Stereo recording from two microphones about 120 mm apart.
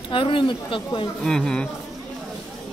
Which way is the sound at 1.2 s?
5° left (ahead or behind).